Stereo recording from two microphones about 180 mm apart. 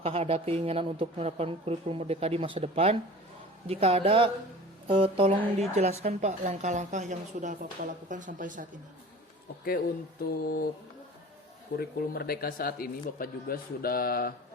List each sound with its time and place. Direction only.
0.0 s speech: 35° right (ahead or behind)
10.4 s mantra: 55° left (ahead or behind)
11.8 s speech: 60° left (ahead or behind)